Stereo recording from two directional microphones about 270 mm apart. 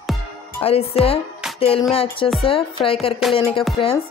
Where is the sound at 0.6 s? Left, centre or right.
Left.